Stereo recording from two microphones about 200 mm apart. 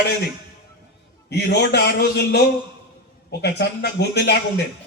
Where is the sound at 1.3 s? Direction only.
55° left (ahead or behind).